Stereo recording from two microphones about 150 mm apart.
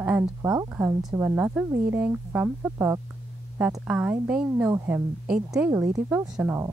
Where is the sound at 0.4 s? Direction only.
25° right (ahead or behind).